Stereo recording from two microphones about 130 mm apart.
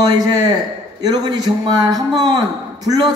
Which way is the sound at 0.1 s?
30° right (ahead or behind).